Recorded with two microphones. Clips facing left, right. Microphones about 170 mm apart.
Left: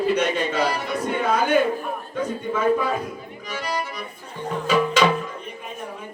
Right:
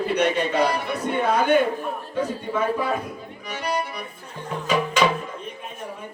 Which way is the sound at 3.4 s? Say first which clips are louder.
Right 1 dB; 60° right (ahead or behind).